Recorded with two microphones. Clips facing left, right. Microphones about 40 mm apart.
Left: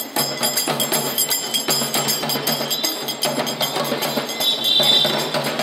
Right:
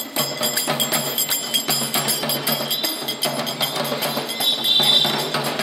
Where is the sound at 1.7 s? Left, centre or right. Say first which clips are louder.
Left 1 dB; centre.